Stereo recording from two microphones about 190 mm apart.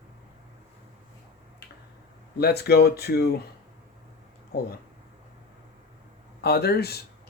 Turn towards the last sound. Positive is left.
turn(degrees=55)  # may be behind; listen again after turning